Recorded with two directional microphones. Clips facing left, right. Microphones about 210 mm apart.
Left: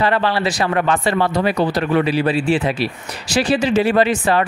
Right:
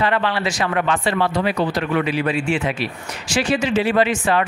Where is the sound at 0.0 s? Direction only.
35° left (ahead or behind).